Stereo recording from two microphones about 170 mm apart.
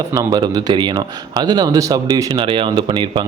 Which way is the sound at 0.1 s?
20° right (ahead or behind).